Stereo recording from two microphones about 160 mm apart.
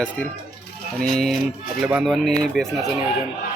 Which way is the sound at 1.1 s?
Centre (ahead or behind).